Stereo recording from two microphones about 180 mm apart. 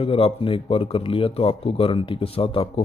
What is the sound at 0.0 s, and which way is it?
Speech, 30° left (ahead or behind).